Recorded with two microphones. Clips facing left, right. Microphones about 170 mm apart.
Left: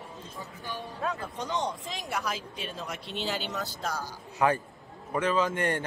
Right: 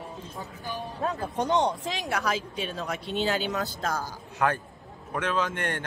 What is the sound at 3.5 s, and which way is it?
Speech, 50° right (ahead or behind).